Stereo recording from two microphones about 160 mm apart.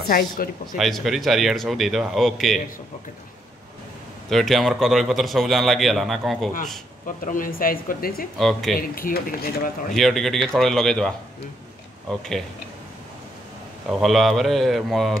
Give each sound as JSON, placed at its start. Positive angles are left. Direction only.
{"t": 0.1, "sound": "a man's voice", "side_deg": 60}
{"t": 0.7, "sound": "a man's voice", "side_deg": 0}
{"t": 4.3, "sound": "a man's voice", "side_deg": 0}
{"t": 7.1, "sound": "a man's voice", "side_deg": 55}
{"t": 8.4, "sound": "a man's voice", "side_deg": 0}
{"t": 8.7, "sound": "speech", "side_deg": 65}
{"t": 9.9, "sound": "a man's voice", "side_deg": 0}
{"t": 13.8, "sound": "a man's voice", "side_deg": 0}